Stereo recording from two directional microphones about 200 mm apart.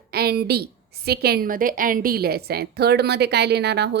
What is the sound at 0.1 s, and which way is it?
A woman's voice, 50° right (ahead or behind).